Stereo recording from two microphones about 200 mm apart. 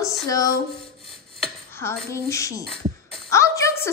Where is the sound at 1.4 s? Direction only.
10° left (ahead or behind).